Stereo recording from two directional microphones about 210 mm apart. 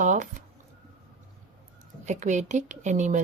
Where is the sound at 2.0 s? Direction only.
35° right (ahead or behind).